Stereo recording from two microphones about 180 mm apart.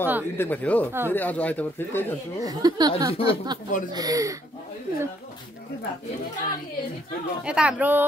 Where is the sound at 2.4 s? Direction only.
20° right (ahead or behind).